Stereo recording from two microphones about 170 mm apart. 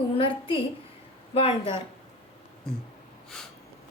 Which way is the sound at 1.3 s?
30° left (ahead or behind).